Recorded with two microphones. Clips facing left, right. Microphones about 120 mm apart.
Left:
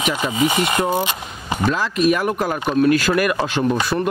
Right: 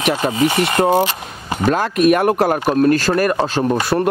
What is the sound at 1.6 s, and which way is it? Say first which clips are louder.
Speech: right 4 dB; 55° right (ahead or behind).